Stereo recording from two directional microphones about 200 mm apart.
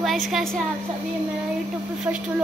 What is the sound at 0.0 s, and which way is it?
Speech, centre (ahead or behind).